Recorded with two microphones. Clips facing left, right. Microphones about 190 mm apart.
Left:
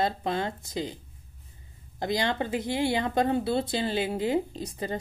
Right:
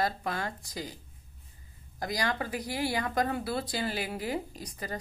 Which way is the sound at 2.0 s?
25° left (ahead or behind).